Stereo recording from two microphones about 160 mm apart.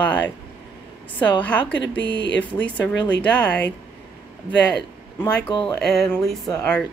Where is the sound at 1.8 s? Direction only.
90° left.